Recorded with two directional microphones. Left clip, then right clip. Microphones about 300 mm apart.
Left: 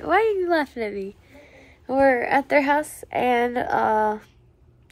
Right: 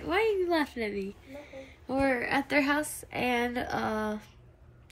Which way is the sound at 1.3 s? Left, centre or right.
Centre.